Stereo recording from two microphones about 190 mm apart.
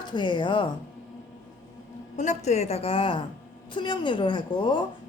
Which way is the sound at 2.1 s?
35° left (ahead or behind).